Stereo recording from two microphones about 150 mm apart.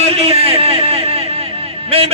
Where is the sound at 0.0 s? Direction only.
40° right (ahead or behind).